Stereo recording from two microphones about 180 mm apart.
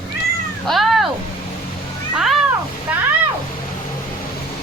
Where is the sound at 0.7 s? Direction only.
Centre (ahead or behind).